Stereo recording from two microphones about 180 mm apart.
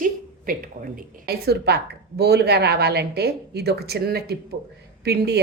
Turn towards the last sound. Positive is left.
turn(degrees=-65)  # may be behind; listen again after turning